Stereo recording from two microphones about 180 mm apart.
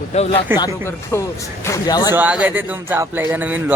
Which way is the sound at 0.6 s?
15° left (ahead or behind).